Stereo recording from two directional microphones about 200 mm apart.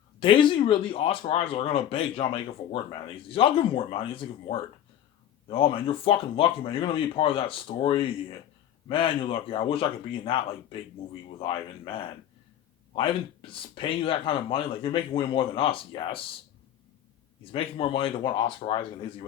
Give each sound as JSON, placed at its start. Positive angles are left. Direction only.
{"t": 0.2, "sound": "speech", "side_deg": 25}
{"t": 17.5, "sound": "speech", "side_deg": 25}